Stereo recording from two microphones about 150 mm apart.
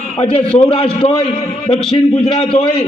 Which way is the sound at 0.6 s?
35° left (ahead or behind).